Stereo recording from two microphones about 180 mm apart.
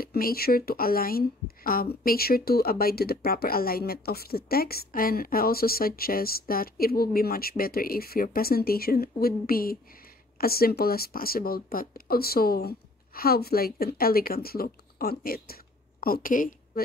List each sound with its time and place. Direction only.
0.0 s speech: 55° left (ahead or behind)